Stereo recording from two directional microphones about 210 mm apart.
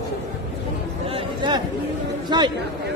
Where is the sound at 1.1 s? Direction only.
25° right (ahead or behind).